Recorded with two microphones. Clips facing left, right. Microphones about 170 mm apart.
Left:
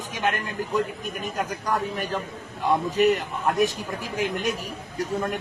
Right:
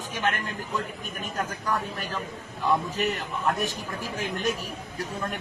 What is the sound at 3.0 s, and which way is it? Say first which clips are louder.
A man's voice: left 6 dB; 20° left (ahead or behind).